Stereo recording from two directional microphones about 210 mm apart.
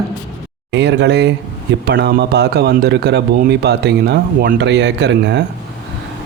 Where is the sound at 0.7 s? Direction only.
55° right (ahead or behind).